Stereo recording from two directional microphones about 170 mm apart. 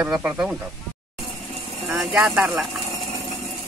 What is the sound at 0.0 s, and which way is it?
Speech, 5° right (ahead or behind).